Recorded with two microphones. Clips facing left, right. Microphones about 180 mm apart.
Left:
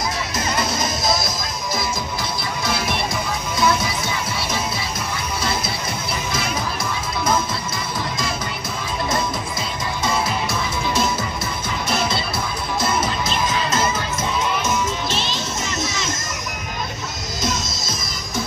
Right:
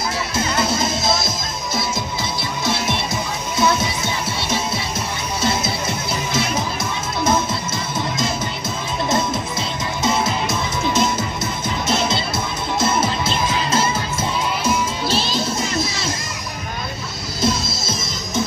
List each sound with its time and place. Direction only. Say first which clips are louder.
0.6 s music: right 3 dB; 25° right (ahead or behind)
10.0 s music: right 3 dB; 20° right (ahead or behind)
17.4 s music: right 5 dB; 30° right (ahead or behind)